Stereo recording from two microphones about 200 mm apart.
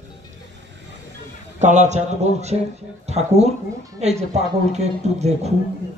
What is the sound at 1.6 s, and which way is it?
Speech, 35° right (ahead or behind).